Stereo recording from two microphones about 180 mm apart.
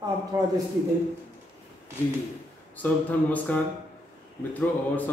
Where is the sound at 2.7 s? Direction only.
10° left (ahead or behind).